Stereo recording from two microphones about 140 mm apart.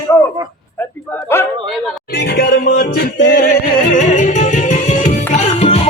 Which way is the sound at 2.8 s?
75° left (ahead or behind).